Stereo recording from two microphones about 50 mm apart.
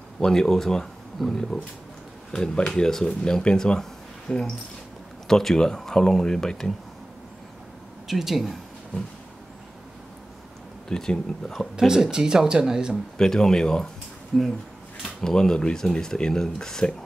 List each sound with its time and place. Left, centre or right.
0.2 s speech: centre
5.3 s speech: centre
8.1 s speech: centre
10.9 s speech: centre
11.7 s speech: centre
13.2 s speech: centre
15.1 s speech: centre